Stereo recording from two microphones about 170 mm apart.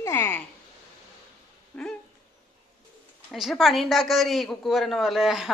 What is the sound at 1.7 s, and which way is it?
Speech, 10° left (ahead or behind).